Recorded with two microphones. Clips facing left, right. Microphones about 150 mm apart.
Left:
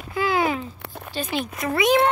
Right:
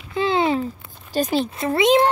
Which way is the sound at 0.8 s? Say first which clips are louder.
Left 9 dB; 65° left (ahead or behind).